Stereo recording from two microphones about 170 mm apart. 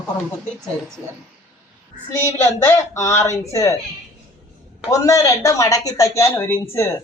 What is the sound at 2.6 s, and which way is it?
Speech, 15° left (ahead or behind).